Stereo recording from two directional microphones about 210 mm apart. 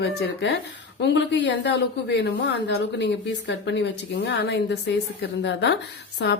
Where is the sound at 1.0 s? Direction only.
55° left (ahead or behind).